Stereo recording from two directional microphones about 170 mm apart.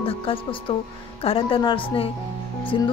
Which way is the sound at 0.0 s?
30° left (ahead or behind).